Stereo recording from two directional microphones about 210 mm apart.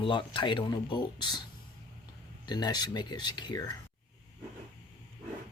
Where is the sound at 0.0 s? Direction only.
25° left (ahead or behind).